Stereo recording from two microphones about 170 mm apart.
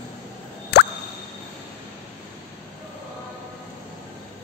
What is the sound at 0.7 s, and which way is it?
Plop, 75° left (ahead or behind).